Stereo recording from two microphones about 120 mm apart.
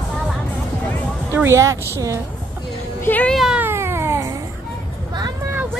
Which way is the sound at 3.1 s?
15° left (ahead or behind).